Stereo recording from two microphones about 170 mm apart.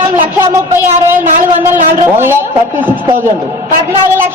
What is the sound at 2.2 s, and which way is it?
Speech, 10° right (ahead or behind).